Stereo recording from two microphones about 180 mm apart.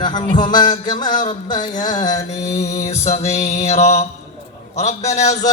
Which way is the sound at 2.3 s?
40° left (ahead or behind).